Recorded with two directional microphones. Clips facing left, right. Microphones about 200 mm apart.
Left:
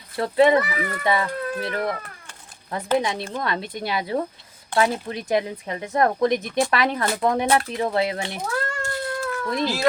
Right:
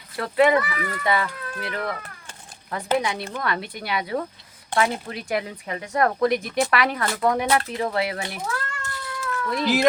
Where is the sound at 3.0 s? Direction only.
25° left (ahead or behind).